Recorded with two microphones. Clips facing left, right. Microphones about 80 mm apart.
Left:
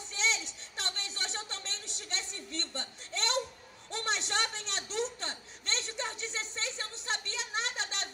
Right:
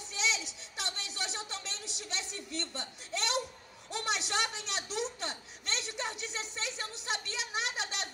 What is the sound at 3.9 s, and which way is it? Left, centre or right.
Baby cry, left.